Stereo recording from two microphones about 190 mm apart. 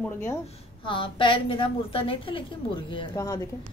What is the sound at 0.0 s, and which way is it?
Speech, 10° left (ahead or behind).